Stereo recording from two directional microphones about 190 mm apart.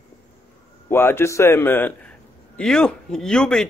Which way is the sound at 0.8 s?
10° left (ahead or behind).